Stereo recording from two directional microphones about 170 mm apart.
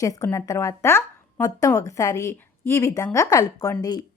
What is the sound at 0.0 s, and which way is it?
Speech, 20° left (ahead or behind).